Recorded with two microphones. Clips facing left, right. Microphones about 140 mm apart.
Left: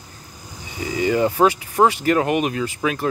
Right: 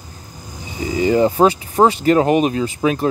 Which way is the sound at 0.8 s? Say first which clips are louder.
Right 4 dB; 30° right (ahead or behind).